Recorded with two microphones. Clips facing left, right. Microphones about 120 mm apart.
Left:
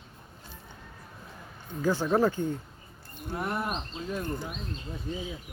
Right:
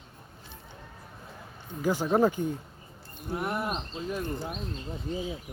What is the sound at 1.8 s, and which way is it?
Speech, 15° right (ahead or behind).